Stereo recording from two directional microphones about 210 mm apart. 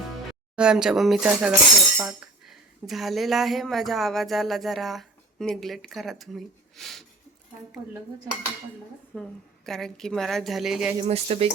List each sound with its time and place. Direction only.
0.5 s a woman's voice: 5° right (ahead or behind)
11.0 s speech: 30° right (ahead or behind)